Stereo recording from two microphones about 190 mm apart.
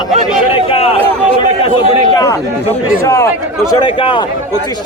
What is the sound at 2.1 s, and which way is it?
A man's voice, 20° left (ahead or behind).